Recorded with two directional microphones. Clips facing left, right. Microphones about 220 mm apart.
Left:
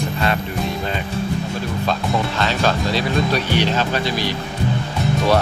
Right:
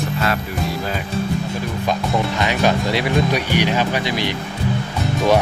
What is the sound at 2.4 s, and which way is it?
Speech, 15° right (ahead or behind).